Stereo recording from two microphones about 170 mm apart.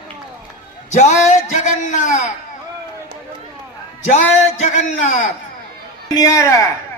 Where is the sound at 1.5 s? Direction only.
45° left (ahead or behind).